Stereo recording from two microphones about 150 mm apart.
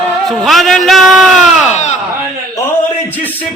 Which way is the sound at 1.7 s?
50° left (ahead or behind).